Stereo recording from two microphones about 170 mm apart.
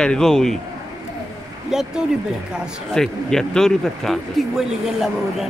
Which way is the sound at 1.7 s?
5° right (ahead or behind).